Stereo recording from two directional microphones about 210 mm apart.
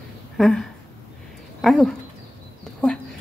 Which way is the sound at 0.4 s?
Centre (ahead or behind).